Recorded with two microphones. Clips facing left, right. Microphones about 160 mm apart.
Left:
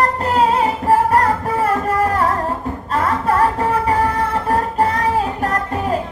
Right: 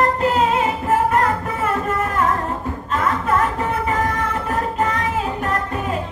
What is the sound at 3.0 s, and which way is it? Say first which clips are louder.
Music: left 3 dB; 35° left (ahead or behind).